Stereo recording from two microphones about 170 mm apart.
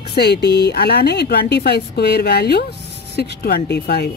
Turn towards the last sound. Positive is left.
turn(degrees=75)  # may be behind; listen again after turning